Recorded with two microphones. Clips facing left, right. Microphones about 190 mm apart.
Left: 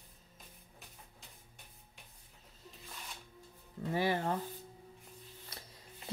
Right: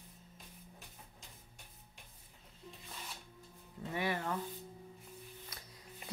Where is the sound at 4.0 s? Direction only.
35° left (ahead or behind).